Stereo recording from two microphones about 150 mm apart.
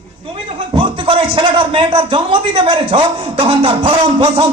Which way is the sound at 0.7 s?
35° right (ahead or behind).